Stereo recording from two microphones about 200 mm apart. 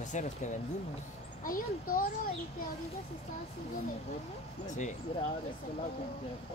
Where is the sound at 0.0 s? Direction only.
35° left (ahead or behind).